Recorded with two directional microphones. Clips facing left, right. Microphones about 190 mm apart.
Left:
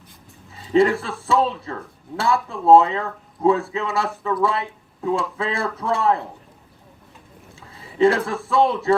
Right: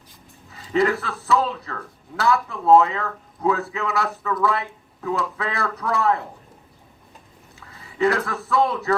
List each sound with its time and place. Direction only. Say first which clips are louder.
0.5 s speech: left 4 dB; 25° left (ahead or behind)
7.9 s speech: left 4 dB; 25° left (ahead or behind)